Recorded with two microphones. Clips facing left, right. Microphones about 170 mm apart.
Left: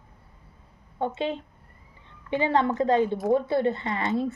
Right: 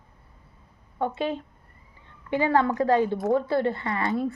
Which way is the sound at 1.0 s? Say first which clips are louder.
Right 1 dB; 20° left (ahead or behind).